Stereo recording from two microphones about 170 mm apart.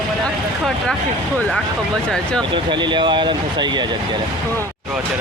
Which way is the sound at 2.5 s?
25° right (ahead or behind).